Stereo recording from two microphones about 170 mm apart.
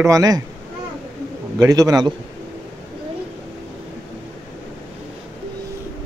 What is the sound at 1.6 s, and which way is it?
Speech, 20° right (ahead or behind).